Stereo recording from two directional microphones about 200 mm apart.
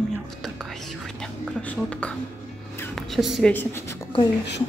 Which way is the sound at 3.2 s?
Centre (ahead or behind).